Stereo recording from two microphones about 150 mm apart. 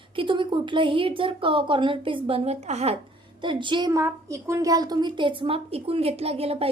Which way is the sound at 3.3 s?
30° right (ahead or behind).